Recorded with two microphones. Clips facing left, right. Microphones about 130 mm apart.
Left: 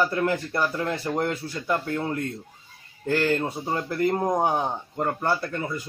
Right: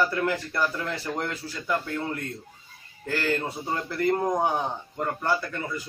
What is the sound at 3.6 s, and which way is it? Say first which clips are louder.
Speech: left 2 dB; 35° left (ahead or behind).